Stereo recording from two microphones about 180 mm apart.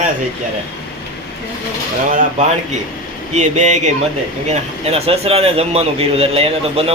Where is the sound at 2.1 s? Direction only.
50° right (ahead or behind).